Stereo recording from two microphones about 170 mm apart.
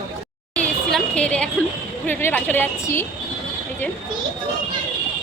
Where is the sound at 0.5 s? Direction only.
5° left (ahead or behind).